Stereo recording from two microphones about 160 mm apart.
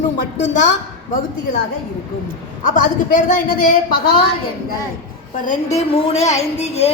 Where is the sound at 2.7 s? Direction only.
55° left (ahead or behind).